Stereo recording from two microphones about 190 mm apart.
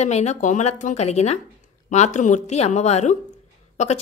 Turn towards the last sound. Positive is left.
turn(degrees=35)  # may be behind; listen again after turning